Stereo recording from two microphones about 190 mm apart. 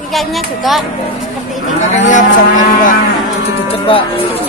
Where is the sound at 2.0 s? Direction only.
40° left (ahead or behind).